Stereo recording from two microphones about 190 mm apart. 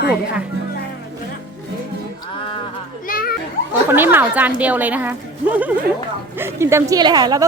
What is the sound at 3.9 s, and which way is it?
A woman's voice, 10° right (ahead or behind).